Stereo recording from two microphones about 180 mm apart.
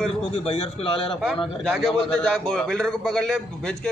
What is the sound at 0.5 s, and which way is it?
Speech, 35° left (ahead or behind).